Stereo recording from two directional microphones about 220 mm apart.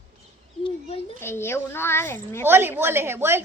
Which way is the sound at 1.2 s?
10° left (ahead or behind).